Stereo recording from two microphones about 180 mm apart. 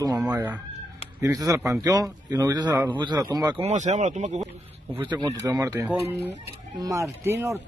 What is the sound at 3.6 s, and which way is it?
Speech, 40° right (ahead or behind).